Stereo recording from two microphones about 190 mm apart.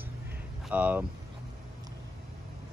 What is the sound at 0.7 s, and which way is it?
Speech, 10° right (ahead or behind).